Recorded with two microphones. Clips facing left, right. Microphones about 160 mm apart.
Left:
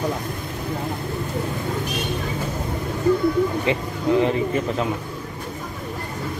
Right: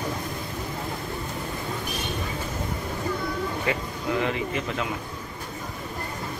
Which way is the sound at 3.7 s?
25° left (ahead or behind).